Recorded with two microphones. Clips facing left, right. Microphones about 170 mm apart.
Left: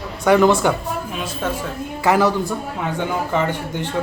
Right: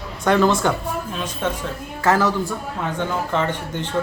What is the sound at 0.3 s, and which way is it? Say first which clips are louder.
Speech: left 3 dB; 15° left (ahead or behind).